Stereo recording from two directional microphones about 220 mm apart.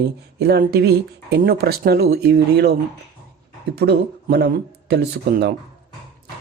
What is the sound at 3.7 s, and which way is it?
Speech, 45° right (ahead or behind).